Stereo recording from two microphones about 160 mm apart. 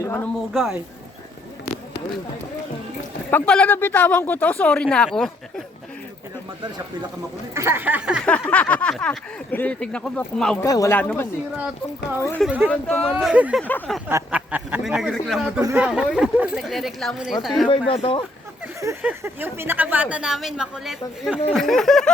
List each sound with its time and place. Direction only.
0.0 s speech: 15° left (ahead or behind)
0.5 s speech: centre (ahead or behind)
3.2 s speech: 10° left (ahead or behind)
7.5 s speech: 15° right (ahead or behind)
8.2 s speech: 10° left (ahead or behind)
10.6 s speech: 20° left (ahead or behind)
12.5 s speech: 10° right (ahead or behind)
12.7 s speech: 5° left (ahead or behind)
13.6 s speech: 10° left (ahead or behind)
14.3 s speech: 10° right (ahead or behind)
17.7 s speech: 35° left (ahead or behind)
18.8 s speech: 15° right (ahead or behind); by 22.1 s 5° left (ahead or behind)